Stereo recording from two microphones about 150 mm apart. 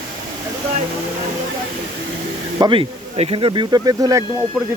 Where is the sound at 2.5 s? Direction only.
30° right (ahead or behind).